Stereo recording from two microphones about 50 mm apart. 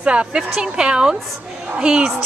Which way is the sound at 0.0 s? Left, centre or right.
Right.